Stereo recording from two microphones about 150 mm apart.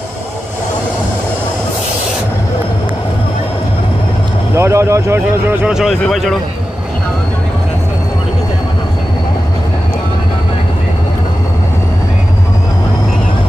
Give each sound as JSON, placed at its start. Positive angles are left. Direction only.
{"t": 4.6, "sound": "a man's voice", "side_deg": -20}
{"t": 5.8, "sound": "speech", "side_deg": 0}